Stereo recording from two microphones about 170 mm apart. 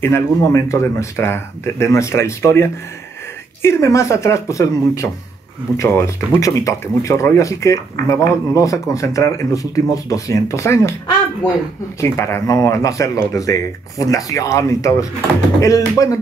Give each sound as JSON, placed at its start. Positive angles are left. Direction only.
{"t": 0.0, "sound": "speech", "side_deg": 15}
{"t": 3.6, "sound": "speech", "side_deg": 15}
{"t": 12.0, "sound": "speech", "side_deg": 15}